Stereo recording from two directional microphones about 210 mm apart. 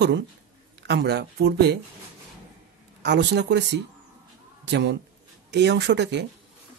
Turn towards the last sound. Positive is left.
turn(degrees=-55)  # may be behind; listen again after turning